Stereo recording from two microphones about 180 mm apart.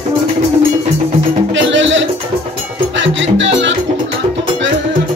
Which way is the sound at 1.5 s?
90° right.